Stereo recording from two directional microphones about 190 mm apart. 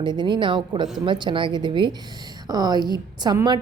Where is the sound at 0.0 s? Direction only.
25° right (ahead or behind).